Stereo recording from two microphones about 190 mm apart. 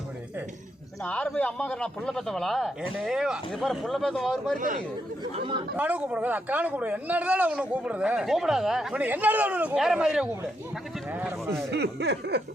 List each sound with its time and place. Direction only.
1.0 s speech: 5° left (ahead or behind)
4.5 s speech: 45° right (ahead or behind)
5.2 s speech: 25° right (ahead or behind)
5.7 s speech: 10° right (ahead or behind)
11.7 s speech: 60° right (ahead or behind)